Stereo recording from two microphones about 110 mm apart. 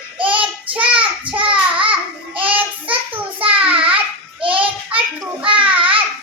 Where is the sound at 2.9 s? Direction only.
55° right (ahead or behind).